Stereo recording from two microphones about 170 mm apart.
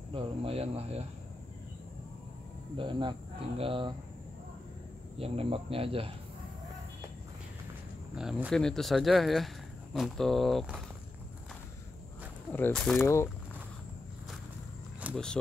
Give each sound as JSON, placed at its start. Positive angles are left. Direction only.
{"t": 0.1, "sound": "speech", "side_deg": -35}
{"t": 2.8, "sound": "speech", "side_deg": -30}
{"t": 5.2, "sound": "speech", "side_deg": -35}
{"t": 8.1, "sound": "speech", "side_deg": -5}
{"t": 12.5, "sound": "speech", "side_deg": 10}
{"t": 13.0, "sound": "speech", "side_deg": 15}
{"t": 15.0, "sound": "a sound", "side_deg": -10}